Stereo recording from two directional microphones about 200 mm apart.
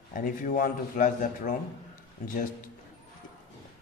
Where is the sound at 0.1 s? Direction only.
45° left (ahead or behind).